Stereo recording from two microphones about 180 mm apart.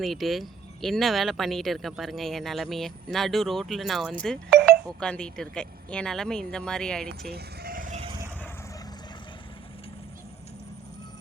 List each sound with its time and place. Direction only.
0.0 s speech: centre (ahead or behind)
7.3 s vehicle: 60° right (ahead or behind); by 8.1 s 40° right (ahead or behind)